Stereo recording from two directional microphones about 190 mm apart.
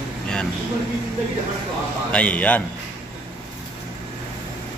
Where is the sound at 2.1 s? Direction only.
5° left (ahead or behind).